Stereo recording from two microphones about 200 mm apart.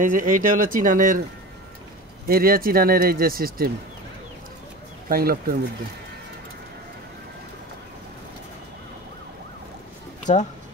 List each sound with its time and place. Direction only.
0.0 s speech: 40° right (ahead or behind)
2.2 s speech: 45° right (ahead or behind)
5.0 s speech: 50° right (ahead or behind)
10.3 s speech: 35° left (ahead or behind)